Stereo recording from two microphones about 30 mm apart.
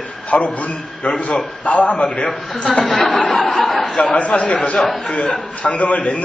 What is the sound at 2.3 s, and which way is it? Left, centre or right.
A man's voice, centre.